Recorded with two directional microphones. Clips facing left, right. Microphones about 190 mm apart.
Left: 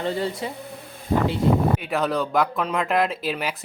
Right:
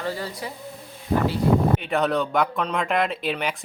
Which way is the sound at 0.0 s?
25° left (ahead or behind).